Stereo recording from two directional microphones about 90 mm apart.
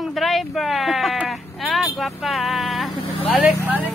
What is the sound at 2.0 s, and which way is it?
Speech, centre (ahead or behind).